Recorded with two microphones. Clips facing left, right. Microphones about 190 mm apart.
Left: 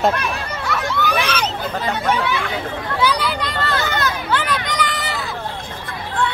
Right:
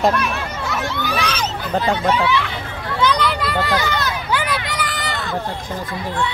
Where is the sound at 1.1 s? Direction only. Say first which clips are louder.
Left 1 dB; 60° left (ahead or behind).